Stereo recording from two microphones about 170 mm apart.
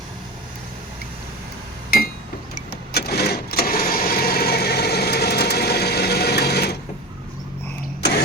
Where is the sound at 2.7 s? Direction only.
65° left (ahead or behind).